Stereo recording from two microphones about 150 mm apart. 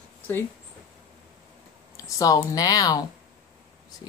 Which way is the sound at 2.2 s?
25° left (ahead or behind).